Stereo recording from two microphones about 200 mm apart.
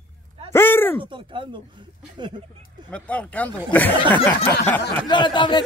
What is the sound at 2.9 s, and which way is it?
Speech, 5° left (ahead or behind).